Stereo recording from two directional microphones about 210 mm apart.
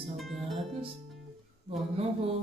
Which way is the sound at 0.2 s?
Centre (ahead or behind).